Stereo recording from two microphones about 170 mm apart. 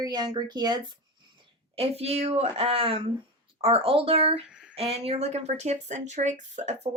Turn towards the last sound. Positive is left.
turn(degrees=-45)  # may be behind; listen again after turning